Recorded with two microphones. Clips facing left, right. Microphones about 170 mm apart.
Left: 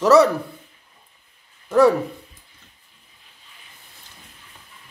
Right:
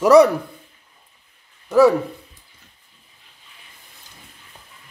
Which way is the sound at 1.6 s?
Centre (ahead or behind).